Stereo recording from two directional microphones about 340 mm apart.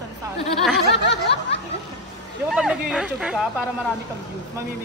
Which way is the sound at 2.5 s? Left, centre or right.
Centre.